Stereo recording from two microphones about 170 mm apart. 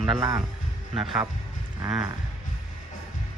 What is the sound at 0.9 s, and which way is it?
Speech, centre (ahead or behind).